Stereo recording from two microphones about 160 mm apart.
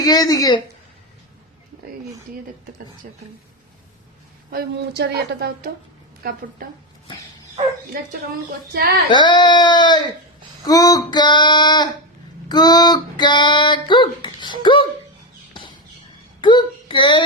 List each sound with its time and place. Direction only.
0.0 s female singing: 25° left (ahead or behind)
4.5 s speech: 90° right; by 6.4 s 70° right (ahead or behind)
8.7 s speech: 70° right (ahead or behind)
9.0 s female singing: 30° left (ahead or behind)
16.4 s a child's voice: 30° left (ahead or behind)